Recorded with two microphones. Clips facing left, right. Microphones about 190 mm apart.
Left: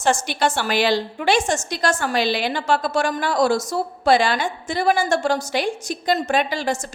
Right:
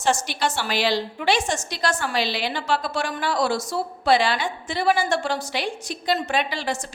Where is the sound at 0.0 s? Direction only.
50° left (ahead or behind).